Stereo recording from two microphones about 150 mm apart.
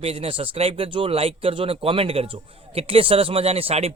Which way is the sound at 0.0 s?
40° right (ahead or behind).